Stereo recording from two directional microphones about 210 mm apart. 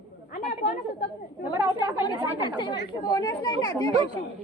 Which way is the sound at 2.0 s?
20° left (ahead or behind).